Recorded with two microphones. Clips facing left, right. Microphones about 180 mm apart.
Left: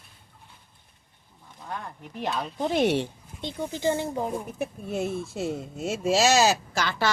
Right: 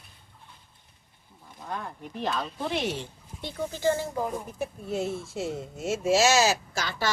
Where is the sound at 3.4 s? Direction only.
20° left (ahead or behind).